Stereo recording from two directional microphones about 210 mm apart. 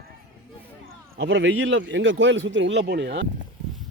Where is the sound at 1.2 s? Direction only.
60° right (ahead or behind).